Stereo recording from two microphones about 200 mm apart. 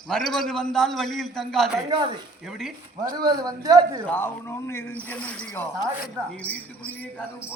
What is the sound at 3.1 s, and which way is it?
Speech, 20° right (ahead or behind).